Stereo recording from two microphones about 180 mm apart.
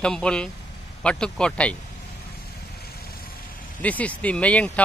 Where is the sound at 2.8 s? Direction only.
55° left (ahead or behind).